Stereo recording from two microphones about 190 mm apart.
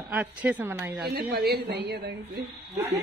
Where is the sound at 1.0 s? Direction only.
55° right (ahead or behind).